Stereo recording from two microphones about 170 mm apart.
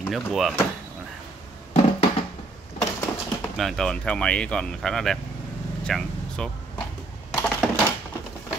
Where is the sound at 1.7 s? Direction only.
40° left (ahead or behind).